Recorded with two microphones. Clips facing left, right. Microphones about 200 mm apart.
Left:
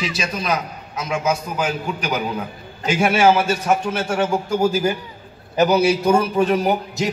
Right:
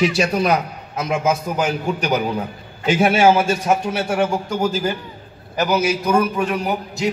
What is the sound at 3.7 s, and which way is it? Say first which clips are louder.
Speech: right 1 dB; 15° right (ahead or behind).